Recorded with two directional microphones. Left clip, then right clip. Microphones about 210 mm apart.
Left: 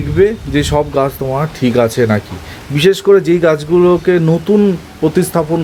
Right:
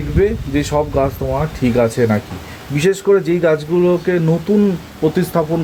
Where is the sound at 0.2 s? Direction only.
20° left (ahead or behind).